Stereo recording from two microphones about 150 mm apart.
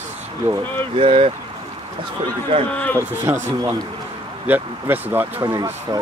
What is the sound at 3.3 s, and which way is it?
Speech, 20° right (ahead or behind).